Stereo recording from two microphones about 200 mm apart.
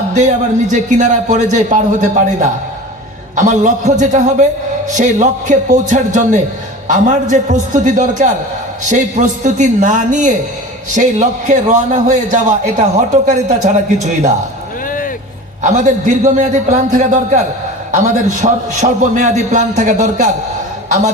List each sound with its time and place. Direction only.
0.1 s a man's voice: 35° right (ahead or behind)
14.8 s music: 45° left (ahead or behind)
15.6 s a man's voice: 40° right (ahead or behind)